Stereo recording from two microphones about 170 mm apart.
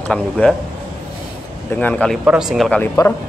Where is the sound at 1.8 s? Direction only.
5° left (ahead or behind).